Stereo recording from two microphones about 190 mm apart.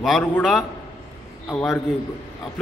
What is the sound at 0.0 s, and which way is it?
A man's voice, centre (ahead or behind).